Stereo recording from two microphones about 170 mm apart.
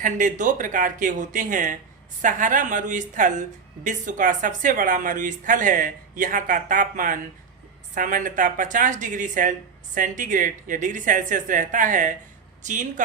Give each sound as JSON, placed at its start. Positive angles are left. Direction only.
{"t": 0.0, "sound": "speech", "side_deg": -50}